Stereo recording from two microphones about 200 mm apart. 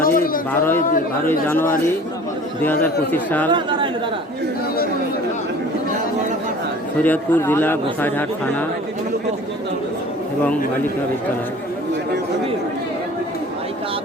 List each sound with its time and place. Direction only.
0.0 s a sound: 45° left (ahead or behind)
0.5 s speech: 10° left (ahead or behind)
2.8 s speech: 10° left (ahead or behind)
3.5 s a man's voice: 25° right (ahead or behind)
7.0 s speech: 10° left (ahead or behind)